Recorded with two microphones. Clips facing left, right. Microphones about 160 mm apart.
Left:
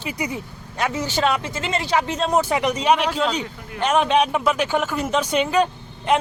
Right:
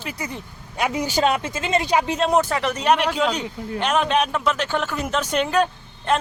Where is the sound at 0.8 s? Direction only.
15° right (ahead or behind).